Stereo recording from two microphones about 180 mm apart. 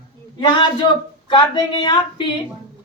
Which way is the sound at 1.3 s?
25° left (ahead or behind).